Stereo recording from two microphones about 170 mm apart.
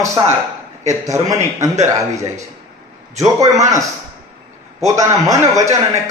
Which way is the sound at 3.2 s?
20° right (ahead or behind).